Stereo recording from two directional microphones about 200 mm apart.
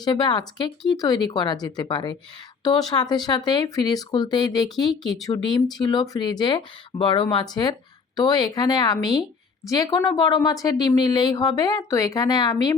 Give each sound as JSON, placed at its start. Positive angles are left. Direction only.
{"t": 0.0, "sound": "a woman's voice", "side_deg": 20}